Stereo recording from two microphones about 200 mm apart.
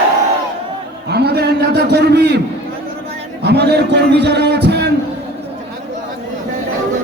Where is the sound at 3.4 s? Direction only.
55° right (ahead or behind).